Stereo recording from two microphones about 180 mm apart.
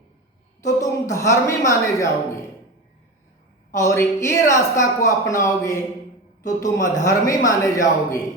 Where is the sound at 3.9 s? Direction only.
15° left (ahead or behind).